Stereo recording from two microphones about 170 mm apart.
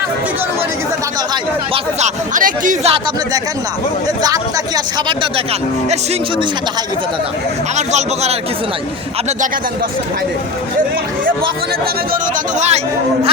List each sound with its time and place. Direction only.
1.7 s speech: 45° right (ahead or behind)
7.8 s speech: 40° right (ahead or behind)
12.5 s speech: 40° right (ahead or behind)